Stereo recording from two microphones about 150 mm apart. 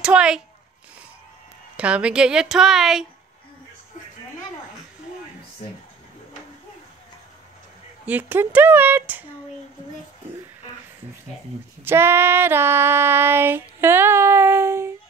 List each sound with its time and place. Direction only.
0.0 s speech: 5° right (ahead or behind)
1.8 s speech: 10° right (ahead or behind)
8.0 s female singing: 10° right (ahead or behind)
11.8 s female singing: 15° right (ahead or behind)